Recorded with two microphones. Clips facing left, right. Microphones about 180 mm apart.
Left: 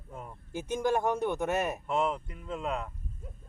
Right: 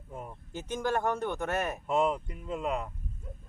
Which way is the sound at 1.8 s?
Centre (ahead or behind).